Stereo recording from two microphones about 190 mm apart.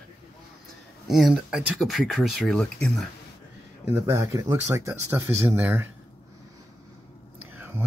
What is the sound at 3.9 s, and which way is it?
Speech, 15° right (ahead or behind).